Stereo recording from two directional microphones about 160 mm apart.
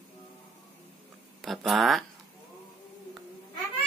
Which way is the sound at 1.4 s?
Centre (ahead or behind).